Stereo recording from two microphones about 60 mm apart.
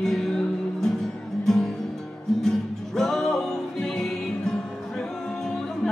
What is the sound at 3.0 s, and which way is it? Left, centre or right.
Music, centre.